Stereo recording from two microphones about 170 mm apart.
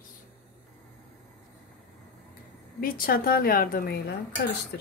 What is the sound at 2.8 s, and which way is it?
A woman's voice, 60° left (ahead or behind).